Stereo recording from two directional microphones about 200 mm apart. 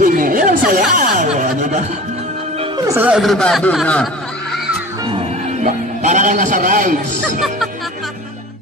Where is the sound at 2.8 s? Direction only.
10° right (ahead or behind).